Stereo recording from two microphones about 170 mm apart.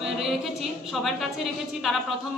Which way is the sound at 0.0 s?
Centre (ahead or behind).